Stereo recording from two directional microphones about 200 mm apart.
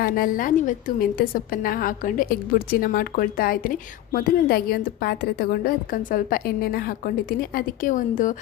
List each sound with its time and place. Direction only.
0.0 s a woman's voice: 45° left (ahead or behind)